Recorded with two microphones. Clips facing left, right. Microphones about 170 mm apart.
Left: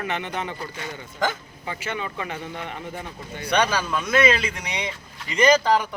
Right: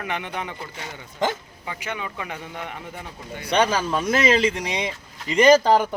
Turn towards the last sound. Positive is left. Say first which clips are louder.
# right 3 dB
turn(degrees=-30)  # may be behind; listen again after turning